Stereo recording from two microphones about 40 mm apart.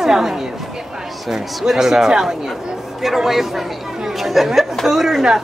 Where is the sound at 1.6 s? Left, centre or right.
Centre.